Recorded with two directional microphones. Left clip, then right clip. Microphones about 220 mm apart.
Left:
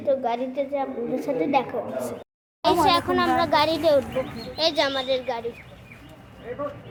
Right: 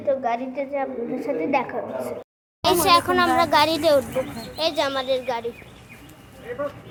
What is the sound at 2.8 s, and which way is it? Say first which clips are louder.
A woman's voice: right 3 dB; 10° right (ahead or behind).